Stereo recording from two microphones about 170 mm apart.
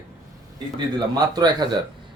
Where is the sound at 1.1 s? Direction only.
25° right (ahead or behind).